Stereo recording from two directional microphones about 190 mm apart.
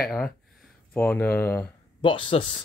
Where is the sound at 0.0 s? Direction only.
Centre (ahead or behind).